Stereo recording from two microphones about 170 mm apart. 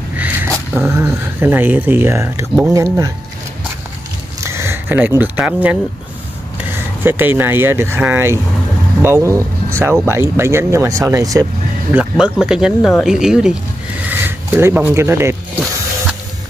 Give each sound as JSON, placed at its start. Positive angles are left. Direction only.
{"t": 0.1, "sound": "a sound", "side_deg": -10}
{"t": 0.7, "sound": "speech", "side_deg": -10}
{"t": 4.4, "sound": "speech", "side_deg": -15}
{"t": 7.0, "sound": "speech", "side_deg": -10}
{"t": 11.9, "sound": "speech", "side_deg": -5}